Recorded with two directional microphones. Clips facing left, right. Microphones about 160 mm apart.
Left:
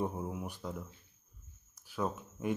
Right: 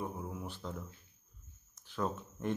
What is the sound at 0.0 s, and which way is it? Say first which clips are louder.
Speech: left 4 dB; 20° left (ahead or behind).